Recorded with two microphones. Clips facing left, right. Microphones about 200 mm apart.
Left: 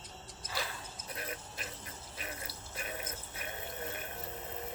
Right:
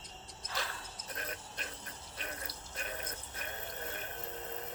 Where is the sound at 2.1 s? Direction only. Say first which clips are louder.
Even; 5° left (ahead or behind).